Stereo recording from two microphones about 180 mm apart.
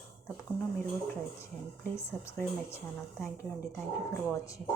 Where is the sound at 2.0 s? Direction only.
15° left (ahead or behind).